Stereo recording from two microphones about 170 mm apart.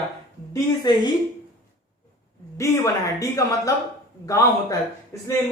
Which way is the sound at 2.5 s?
20° left (ahead or behind).